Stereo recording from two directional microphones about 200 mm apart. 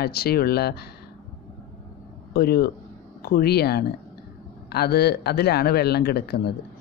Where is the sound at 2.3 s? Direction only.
50° left (ahead or behind).